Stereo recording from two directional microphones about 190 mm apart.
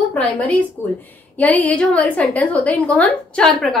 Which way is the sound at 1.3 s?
10° left (ahead or behind).